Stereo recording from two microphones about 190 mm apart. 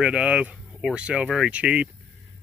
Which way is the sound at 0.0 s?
5° right (ahead or behind).